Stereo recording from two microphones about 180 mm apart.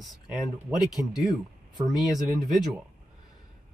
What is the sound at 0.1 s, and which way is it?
Speech, centre (ahead or behind).